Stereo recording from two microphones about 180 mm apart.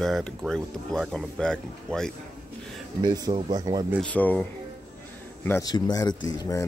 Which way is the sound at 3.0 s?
20° right (ahead or behind).